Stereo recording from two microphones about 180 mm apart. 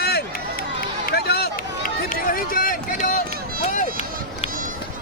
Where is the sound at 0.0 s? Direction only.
60° left (ahead or behind); by 4.0 s 45° left (ahead or behind).